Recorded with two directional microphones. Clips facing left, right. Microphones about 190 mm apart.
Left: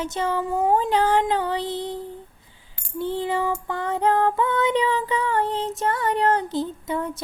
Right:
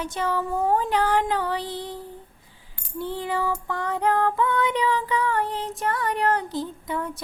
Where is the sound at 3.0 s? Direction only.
25° left (ahead or behind).